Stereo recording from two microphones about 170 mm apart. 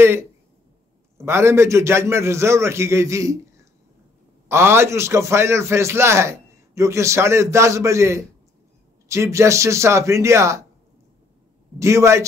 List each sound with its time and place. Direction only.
1.1 s a man's voice: 15° right (ahead or behind)
4.5 s a man's voice: 15° right (ahead or behind)
11.8 s a man's voice: 15° right (ahead or behind)